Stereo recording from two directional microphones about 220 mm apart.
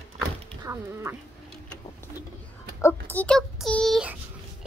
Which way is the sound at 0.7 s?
10° right (ahead or behind).